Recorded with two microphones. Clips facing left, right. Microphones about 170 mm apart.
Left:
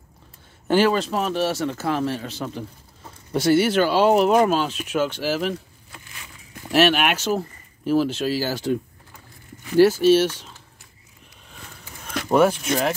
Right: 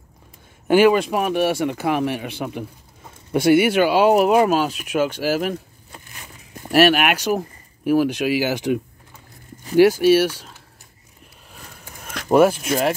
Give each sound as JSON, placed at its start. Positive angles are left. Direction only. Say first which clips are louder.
{"t": 0.7, "sound": "speech", "louder": "right 4 dB", "side_deg": -10}
{"t": 3.4, "sound": "speech", "louder": "right 3 dB", "side_deg": -15}
{"t": 5.5, "sound": "a sound", "louder": "right 1 dB", "side_deg": -40}
{"t": 6.7, "sound": "speech", "louder": "right 3 dB", "side_deg": -10}
{"t": 9.8, "sound": "speech", "louder": "right 1 dB", "side_deg": -15}
{"t": 12.1, "sound": "a sound", "louder": "right 3 dB", "side_deg": -5}
{"t": 12.6, "sound": "speech", "louder": "right 2 dB", "side_deg": -5}